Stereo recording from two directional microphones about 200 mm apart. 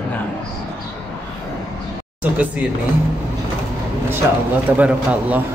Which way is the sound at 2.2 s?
5° right (ahead or behind).